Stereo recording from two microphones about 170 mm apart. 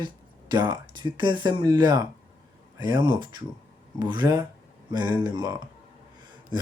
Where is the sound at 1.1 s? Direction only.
25° right (ahead or behind).